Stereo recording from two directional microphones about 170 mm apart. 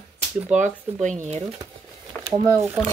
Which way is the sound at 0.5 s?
45° right (ahead or behind).